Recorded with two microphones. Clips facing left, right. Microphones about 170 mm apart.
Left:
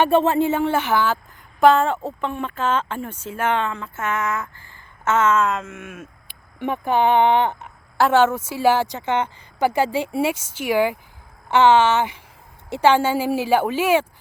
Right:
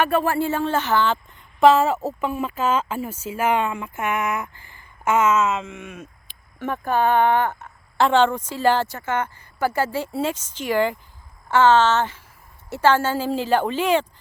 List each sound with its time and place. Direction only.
0.0 s speech: 25° left (ahead or behind); by 6.1 s 5° left (ahead or behind)
6.6 s speech: 15° left (ahead or behind)
7.9 s a woman's voice: 5° left (ahead or behind)